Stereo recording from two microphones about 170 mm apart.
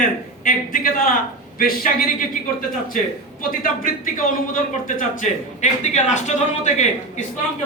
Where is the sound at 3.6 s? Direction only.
50° left (ahead or behind).